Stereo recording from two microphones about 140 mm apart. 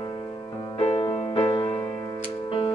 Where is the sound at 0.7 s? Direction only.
40° left (ahead or behind).